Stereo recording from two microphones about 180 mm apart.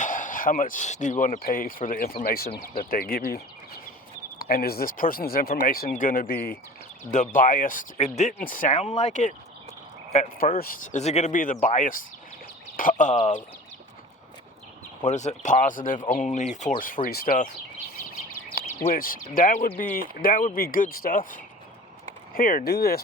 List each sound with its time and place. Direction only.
0.0 s speech: 45° left (ahead or behind)
10.6 s speech: 50° left (ahead or behind)
11.0 s speech: 40° left (ahead or behind)
15.0 s speech: 40° left (ahead or behind)
18.9 s speech: 50° left (ahead or behind)